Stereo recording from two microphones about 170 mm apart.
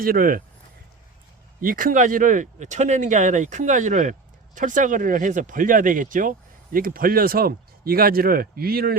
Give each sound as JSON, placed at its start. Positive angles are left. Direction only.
{"t": 0.0, "sound": "speech", "side_deg": -60}
{"t": 1.6, "sound": "speech", "side_deg": -55}